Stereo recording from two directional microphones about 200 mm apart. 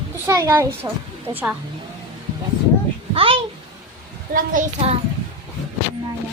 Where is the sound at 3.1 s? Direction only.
30° right (ahead or behind).